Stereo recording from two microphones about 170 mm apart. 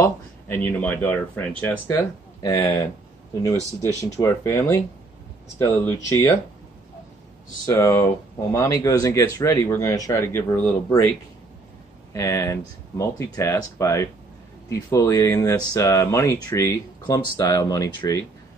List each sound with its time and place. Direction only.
0.0 s speech: 15° left (ahead or behind)
7.6 s speech: 20° left (ahead or behind)
12.1 s speech: 15° left (ahead or behind)